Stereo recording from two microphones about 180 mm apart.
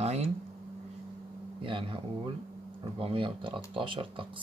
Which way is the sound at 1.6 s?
30° right (ahead or behind).